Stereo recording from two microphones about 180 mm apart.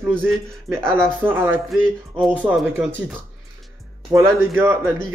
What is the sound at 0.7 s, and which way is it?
Speech, 10° right (ahead or behind).